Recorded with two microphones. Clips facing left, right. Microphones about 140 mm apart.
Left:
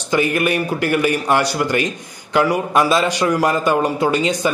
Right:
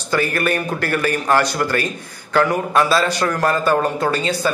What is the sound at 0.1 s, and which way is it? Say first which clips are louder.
A man's voice: left 2 dB; 15° left (ahead or behind).